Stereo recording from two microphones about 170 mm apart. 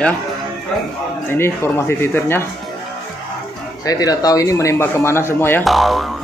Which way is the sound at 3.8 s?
20° left (ahead or behind).